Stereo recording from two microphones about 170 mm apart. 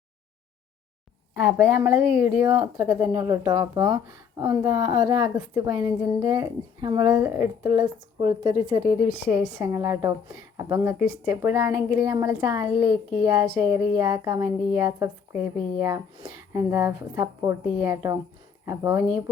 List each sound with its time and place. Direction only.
1.5 s a woman's voice: 10° right (ahead or behind)